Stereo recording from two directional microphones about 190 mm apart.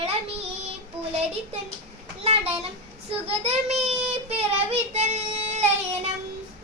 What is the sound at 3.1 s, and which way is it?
Child singing, 30° right (ahead or behind).